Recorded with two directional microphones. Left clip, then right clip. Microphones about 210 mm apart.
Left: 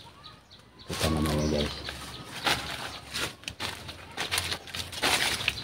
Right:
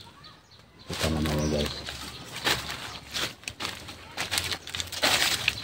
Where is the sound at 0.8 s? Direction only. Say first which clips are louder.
Even; centre (ahead or behind).